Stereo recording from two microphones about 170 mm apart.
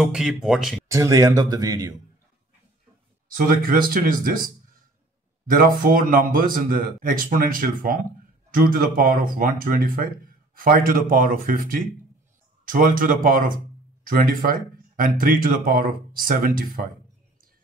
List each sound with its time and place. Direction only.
0.0 s speech: 5° right (ahead or behind)
0.8 s speech: 20° right (ahead or behind)
3.3 s speech: 55° right (ahead or behind)
5.5 s speech: 55° right (ahead or behind)